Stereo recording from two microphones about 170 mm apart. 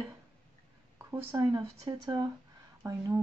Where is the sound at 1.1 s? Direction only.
15° right (ahead or behind).